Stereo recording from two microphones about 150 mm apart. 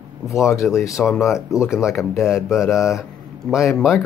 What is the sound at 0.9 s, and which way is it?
Speech, centre (ahead or behind).